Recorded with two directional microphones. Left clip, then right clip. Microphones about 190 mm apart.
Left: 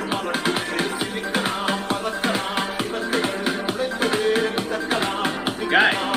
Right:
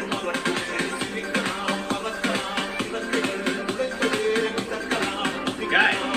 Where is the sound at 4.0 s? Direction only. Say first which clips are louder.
Left 3 dB; 45° left (ahead or behind).